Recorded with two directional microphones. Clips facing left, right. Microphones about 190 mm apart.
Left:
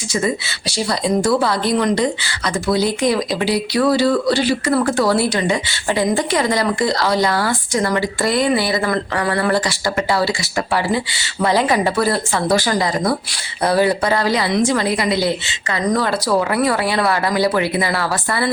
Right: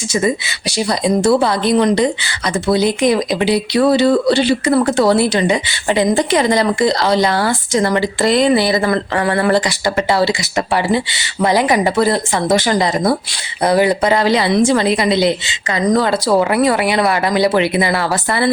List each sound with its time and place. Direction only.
0.8 s speech: 15° right (ahead or behind)